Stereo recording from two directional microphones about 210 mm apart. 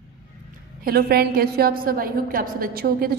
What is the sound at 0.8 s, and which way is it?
A woman's voice, 45° right (ahead or behind).